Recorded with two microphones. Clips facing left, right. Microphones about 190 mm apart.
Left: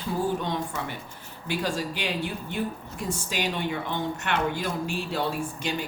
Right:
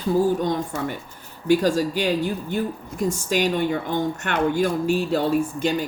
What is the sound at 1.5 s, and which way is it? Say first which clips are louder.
Speech: right 10 dB; 45° right (ahead or behind).